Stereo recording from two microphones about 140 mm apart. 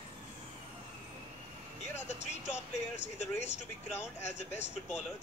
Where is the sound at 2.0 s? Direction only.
55° left (ahead or behind).